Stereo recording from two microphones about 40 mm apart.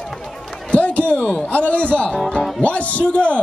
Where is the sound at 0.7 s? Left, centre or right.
Left.